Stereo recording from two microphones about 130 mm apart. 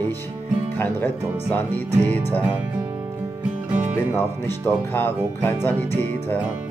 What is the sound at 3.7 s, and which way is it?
Music, 10° right (ahead or behind).